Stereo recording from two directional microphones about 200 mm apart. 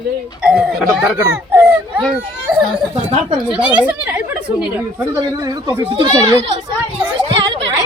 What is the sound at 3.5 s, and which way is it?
A woman's voice, 5° right (ahead or behind).